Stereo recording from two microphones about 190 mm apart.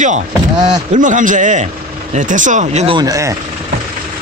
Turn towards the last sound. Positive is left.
turn(degrees=-15)  # may be behind; listen again after turning